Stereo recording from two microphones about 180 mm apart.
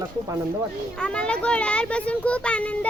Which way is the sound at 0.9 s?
5° left (ahead or behind).